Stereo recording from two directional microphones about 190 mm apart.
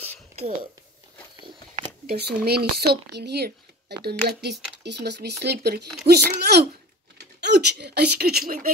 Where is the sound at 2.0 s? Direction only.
60° right (ahead or behind).